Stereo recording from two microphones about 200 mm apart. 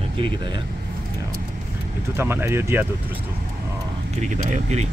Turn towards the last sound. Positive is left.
turn(degrees=-35)  # may be behind; listen again after turning